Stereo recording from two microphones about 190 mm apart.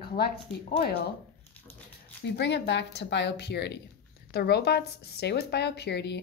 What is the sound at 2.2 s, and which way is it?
Speech, 65° left (ahead or behind).